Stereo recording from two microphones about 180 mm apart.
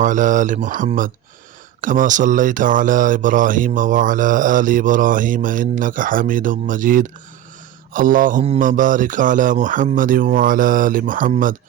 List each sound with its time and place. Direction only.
0.0 s mantra: 45° right (ahead or behind)